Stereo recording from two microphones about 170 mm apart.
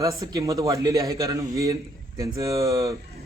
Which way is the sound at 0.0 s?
20° right (ahead or behind).